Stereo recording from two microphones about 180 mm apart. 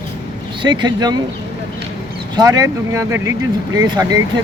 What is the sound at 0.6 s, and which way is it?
Speech, 25° right (ahead or behind).